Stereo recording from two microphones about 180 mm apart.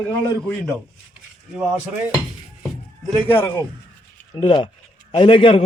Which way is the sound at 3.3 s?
10° left (ahead or behind).